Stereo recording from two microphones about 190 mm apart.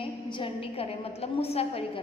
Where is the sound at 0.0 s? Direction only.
25° left (ahead or behind).